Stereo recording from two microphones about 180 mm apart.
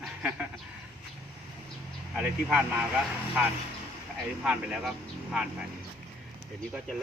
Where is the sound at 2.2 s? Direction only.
10° right (ahead or behind).